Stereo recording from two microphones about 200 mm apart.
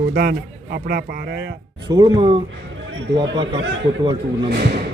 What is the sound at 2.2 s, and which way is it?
Speech, 25° right (ahead or behind).